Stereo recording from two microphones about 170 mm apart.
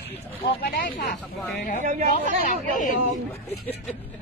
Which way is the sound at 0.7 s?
60° left (ahead or behind).